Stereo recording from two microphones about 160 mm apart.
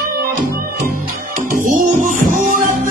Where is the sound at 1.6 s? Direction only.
55° right (ahead or behind).